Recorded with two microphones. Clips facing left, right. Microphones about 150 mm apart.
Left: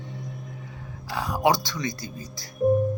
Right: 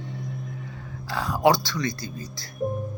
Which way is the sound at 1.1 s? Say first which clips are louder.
Right 2 dB; 15° left (ahead or behind).